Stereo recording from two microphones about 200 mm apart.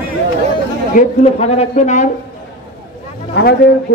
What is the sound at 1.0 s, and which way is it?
A man's voice, 30° left (ahead or behind).